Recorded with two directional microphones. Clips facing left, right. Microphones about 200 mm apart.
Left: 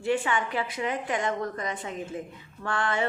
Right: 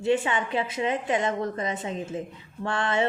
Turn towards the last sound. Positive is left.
turn(degrees=-25)  # may be behind; listen again after turning